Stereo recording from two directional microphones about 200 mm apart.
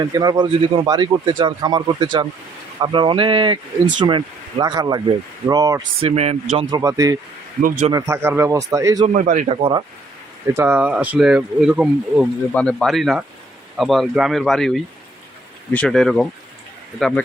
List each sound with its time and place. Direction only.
0.0 s speech: 20° right (ahead or behind)
6.0 s speech: 30° right (ahead or behind)
6.7 s speech: 15° right (ahead or behind)
7.6 s speech: 35° right (ahead or behind)
7.9 s speech: 15° right (ahead or behind)
9.0 s speech: 40° right (ahead or behind)
10.6 s speech: 10° right (ahead or behind)